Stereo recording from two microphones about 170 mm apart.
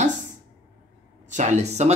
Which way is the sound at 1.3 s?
45° right (ahead or behind).